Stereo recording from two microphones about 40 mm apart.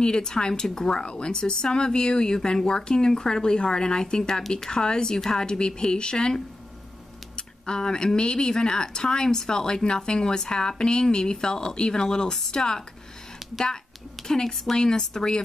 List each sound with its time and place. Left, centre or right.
0.0 s speech: centre
4.2 s speech: centre
4.6 s speech: centre
14.2 s speech: centre